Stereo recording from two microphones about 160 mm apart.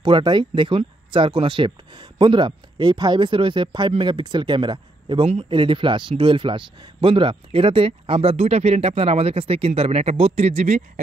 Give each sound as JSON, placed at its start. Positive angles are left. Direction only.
{"t": 0.0, "sound": "a man's voice", "side_deg": -30}